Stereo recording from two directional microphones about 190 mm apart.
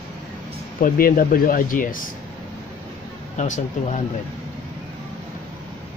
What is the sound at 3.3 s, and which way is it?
Speech, 40° left (ahead or behind).